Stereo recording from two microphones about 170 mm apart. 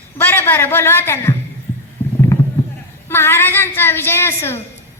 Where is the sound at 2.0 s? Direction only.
15° left (ahead or behind).